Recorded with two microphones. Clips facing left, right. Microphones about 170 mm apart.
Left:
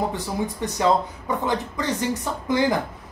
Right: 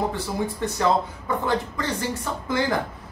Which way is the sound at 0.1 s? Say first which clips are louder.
Even; 15° left (ahead or behind).